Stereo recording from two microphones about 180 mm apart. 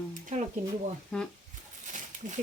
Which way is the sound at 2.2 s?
45° right (ahead or behind).